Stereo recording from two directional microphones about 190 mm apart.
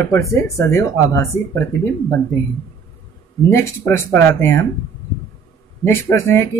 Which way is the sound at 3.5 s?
10° left (ahead or behind).